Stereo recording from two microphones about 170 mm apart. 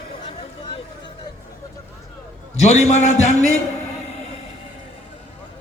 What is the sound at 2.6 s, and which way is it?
Speech, 40° left (ahead or behind).